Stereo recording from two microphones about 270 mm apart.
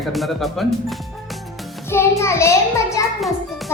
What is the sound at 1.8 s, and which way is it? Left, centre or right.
Child singing, centre.